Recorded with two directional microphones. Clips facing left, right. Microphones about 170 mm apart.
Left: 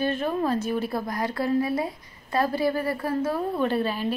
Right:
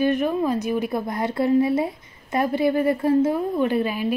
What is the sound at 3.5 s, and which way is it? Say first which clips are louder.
Speech: right 3 dB; 15° right (ahead or behind).